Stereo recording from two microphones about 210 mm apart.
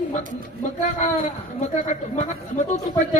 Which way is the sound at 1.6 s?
35° left (ahead or behind).